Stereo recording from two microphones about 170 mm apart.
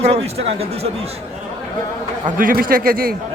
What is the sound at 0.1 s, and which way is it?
Speech, 35° right (ahead or behind).